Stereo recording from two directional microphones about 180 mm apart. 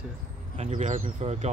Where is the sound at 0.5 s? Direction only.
40° right (ahead or behind).